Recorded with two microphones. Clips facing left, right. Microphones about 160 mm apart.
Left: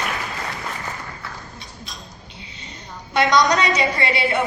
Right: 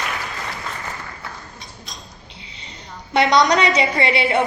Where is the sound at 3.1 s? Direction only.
30° right (ahead or behind).